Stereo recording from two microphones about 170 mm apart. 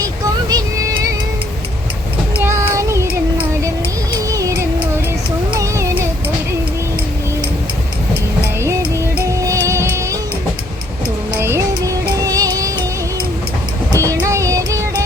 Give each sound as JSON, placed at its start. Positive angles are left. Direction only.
{"t": 0.0, "sound": "a sound", "side_deg": -20}
{"t": 2.3, "sound": "child singing", "side_deg": -15}
{"t": 4.3, "sound": "music", "side_deg": -20}
{"t": 5.5, "sound": "child singing", "side_deg": -15}
{"t": 8.6, "sound": "music", "side_deg": -15}
{"t": 11.3, "sound": "music", "side_deg": -15}
{"t": 13.9, "sound": "music", "side_deg": -20}